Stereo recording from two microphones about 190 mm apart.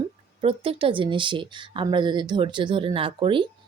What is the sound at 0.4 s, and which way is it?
Speech, 30° right (ahead or behind).